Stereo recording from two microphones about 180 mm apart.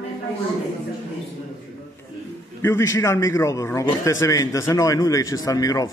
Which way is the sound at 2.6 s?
15° left (ahead or behind).